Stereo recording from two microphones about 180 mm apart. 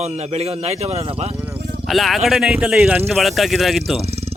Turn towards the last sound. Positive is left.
turn(degrees=-35)  # may be behind; listen again after turning